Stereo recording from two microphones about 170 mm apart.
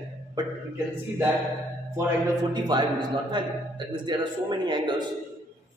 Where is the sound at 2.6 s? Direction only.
25° right (ahead or behind).